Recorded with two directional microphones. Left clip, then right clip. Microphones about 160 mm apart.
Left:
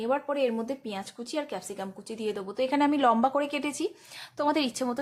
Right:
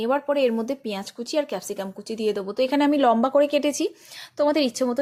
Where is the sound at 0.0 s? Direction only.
35° right (ahead or behind).